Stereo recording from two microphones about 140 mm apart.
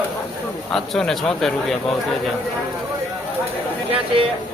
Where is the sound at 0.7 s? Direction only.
5° left (ahead or behind).